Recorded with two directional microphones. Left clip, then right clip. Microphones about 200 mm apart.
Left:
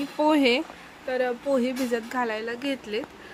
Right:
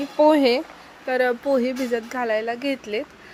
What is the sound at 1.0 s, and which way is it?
Speech, 35° right (ahead or behind).